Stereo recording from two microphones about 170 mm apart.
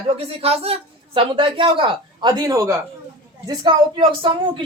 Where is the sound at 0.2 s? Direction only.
35° right (ahead or behind).